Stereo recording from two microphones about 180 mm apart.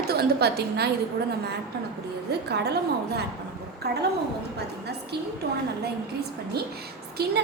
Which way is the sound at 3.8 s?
60° right (ahead or behind).